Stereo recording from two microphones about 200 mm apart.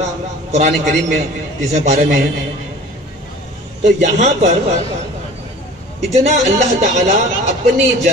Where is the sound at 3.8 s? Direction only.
35° right (ahead or behind).